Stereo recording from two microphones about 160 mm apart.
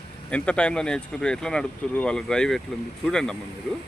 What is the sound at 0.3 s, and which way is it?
Speech, 10° left (ahead or behind).